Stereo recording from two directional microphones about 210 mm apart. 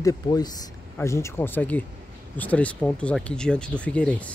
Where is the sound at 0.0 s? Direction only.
20° left (ahead or behind).